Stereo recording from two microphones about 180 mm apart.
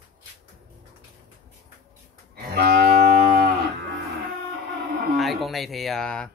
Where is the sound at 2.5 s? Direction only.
60° right (ahead or behind).